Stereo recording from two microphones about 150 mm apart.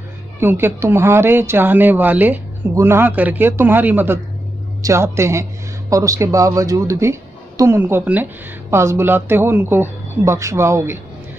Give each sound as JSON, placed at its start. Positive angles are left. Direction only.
{"t": 0.4, "sound": "speech", "side_deg": -15}